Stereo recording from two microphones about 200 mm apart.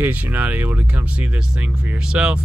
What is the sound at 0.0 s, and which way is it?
Speech, 10° right (ahead or behind).